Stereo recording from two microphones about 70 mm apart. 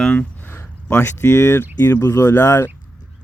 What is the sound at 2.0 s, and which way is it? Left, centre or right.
Speech, left.